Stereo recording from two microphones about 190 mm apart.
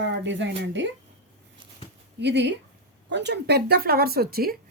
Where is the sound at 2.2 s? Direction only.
65° right (ahead or behind).